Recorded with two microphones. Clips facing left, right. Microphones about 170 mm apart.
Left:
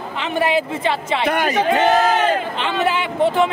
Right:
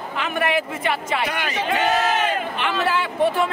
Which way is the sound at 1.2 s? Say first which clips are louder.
Left 7 dB; 50° left (ahead or behind).